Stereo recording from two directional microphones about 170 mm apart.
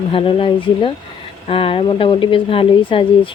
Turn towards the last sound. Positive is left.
turn(degrees=30)  # may be behind; listen again after turning